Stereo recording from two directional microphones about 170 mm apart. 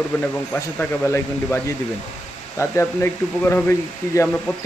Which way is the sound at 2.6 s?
15° left (ahead or behind).